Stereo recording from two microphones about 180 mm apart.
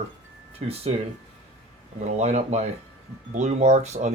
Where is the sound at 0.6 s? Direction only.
40° right (ahead or behind).